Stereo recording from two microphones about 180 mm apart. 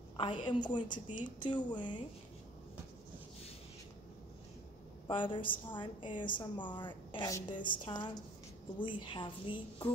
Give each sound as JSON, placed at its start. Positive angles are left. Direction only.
{"t": 0.2, "sound": "a woman's voice", "side_deg": 30}
{"t": 5.0, "sound": "a woman's voice", "side_deg": 25}